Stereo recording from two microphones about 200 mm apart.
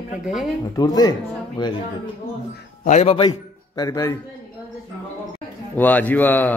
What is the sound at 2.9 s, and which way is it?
A man's voice, 30° left (ahead or behind).